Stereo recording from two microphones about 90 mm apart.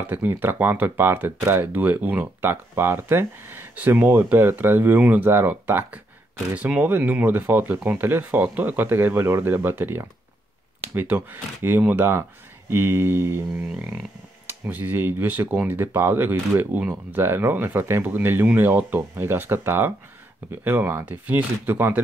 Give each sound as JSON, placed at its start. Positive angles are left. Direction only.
{"t": 0.0, "sound": "speech", "side_deg": -20}
{"t": 14.5, "sound": "speech", "side_deg": -20}